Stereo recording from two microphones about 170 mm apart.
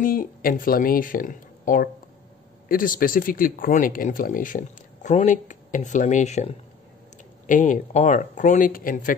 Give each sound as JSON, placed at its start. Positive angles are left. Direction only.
{"t": 0.0, "sound": "speech", "side_deg": 55}